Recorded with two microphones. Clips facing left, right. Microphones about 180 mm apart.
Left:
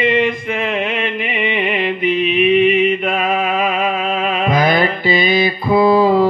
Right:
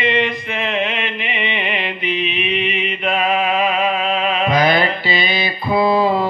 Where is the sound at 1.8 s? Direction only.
45° left (ahead or behind).